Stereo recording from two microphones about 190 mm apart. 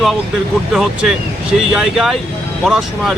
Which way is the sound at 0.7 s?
Centre (ahead or behind).